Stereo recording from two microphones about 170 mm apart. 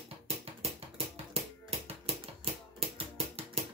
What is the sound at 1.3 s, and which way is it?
Music, 35° right (ahead or behind).